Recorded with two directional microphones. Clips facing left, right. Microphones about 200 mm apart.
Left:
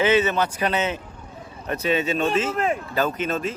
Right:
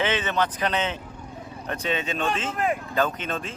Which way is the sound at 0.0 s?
10° left (ahead or behind).